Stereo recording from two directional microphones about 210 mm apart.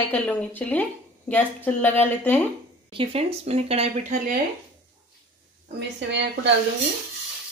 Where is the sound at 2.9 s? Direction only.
30° right (ahead or behind).